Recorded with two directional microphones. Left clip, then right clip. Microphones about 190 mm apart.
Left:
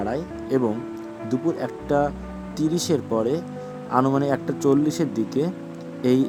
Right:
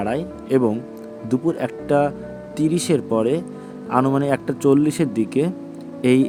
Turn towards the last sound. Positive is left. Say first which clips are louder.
# right 3 dB
turn(degrees=-15)  # may be behind; listen again after turning